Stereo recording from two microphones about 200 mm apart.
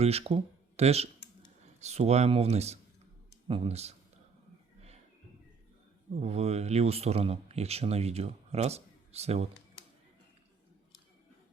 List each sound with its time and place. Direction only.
0.0 s speech: 30° right (ahead or behind)
6.1 s speech: 30° right (ahead or behind)